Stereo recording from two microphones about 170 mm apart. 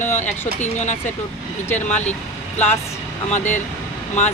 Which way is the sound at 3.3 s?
45° left (ahead or behind).